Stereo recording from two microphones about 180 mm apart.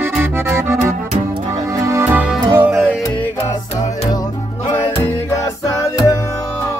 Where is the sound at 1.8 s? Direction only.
15° right (ahead or behind).